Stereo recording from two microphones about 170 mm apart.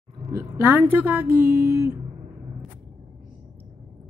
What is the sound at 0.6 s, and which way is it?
Speech, 10° right (ahead or behind).